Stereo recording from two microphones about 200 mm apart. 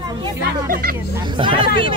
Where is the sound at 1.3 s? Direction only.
25° right (ahead or behind).